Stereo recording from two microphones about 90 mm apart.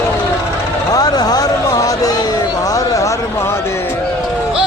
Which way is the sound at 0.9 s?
45° left (ahead or behind).